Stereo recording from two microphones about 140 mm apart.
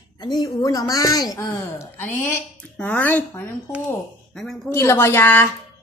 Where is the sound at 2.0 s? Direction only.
15° left (ahead or behind).